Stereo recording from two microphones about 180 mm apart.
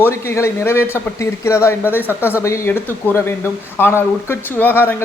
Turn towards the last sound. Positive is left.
turn(degrees=10)  # may be behind; listen again after turning